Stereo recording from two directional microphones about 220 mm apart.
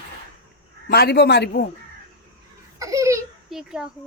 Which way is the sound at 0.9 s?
45° left (ahead or behind).